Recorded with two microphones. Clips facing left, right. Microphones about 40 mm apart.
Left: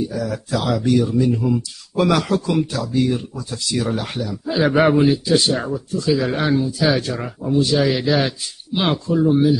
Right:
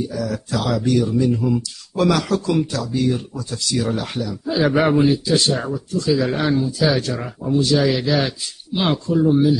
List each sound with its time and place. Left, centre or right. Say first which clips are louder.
0.1 s speech: left 1 dB; centre
1.1 s speech: even; centre